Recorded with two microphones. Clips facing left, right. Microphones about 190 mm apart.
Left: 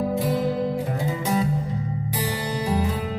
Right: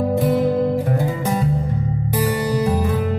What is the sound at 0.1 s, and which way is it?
Music, 55° right (ahead or behind).